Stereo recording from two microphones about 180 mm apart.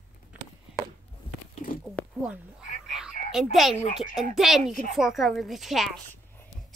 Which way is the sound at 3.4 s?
Centre (ahead or behind).